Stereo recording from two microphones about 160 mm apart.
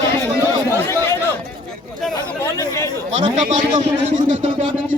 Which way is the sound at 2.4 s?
20° left (ahead or behind).